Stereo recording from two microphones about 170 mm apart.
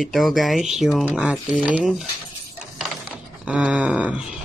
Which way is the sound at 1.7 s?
Centre (ahead or behind).